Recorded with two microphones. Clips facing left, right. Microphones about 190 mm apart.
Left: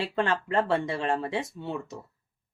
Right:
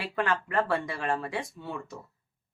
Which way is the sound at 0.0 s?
25° left (ahead or behind).